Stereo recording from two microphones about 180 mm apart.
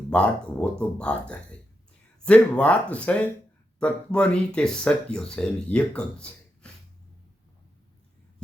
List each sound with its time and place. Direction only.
0.1 s speech: 5° left (ahead or behind)
2.2 s speech: 5° left (ahead or behind)